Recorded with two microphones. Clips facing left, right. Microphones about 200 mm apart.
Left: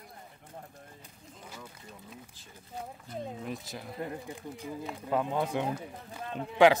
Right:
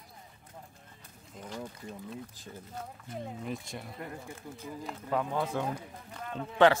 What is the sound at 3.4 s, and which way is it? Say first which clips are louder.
Speech: even; centre (ahead or behind).